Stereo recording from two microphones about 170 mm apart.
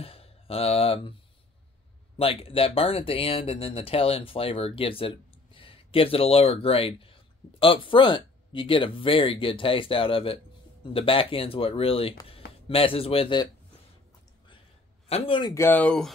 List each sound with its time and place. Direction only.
0.0 s a sound: 35° left (ahead or behind)
2.1 s speech: 35° left (ahead or behind)
15.0 s speech: 35° left (ahead or behind)
15.5 s speech: 10° left (ahead or behind)